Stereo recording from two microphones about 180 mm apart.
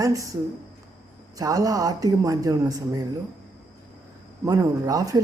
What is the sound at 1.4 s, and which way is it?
Speech, 20° right (ahead or behind).